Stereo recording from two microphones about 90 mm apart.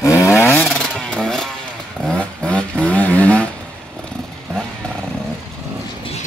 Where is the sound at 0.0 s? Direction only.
35° left (ahead or behind).